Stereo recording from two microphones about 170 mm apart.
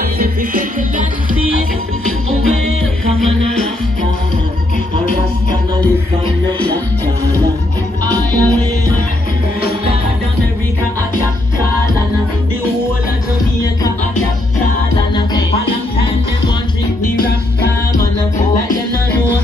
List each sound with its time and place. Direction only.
0.2 s music: 55° right (ahead or behind)
8.3 s music: 10° left (ahead or behind)